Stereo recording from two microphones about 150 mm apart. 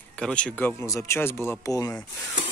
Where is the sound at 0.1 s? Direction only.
5° left (ahead or behind).